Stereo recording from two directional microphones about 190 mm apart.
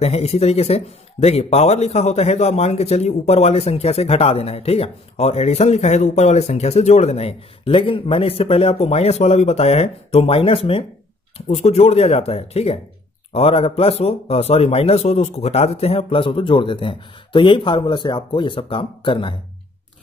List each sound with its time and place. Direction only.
0.0 s speech: 35° left (ahead or behind)